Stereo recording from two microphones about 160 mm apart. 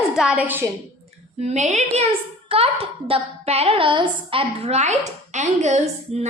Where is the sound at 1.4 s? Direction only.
45° right (ahead or behind).